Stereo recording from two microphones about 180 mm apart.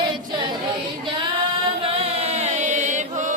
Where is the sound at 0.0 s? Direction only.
25° right (ahead or behind).